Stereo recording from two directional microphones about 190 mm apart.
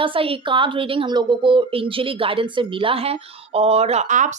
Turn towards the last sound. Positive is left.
turn(degrees=-40)  # may be behind; listen again after turning